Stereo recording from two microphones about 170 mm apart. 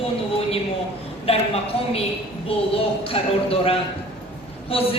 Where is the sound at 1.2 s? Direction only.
35° left (ahead or behind).